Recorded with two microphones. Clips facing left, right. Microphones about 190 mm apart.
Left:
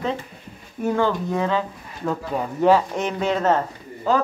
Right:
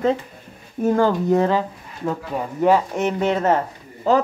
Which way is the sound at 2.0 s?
10° right (ahead or behind).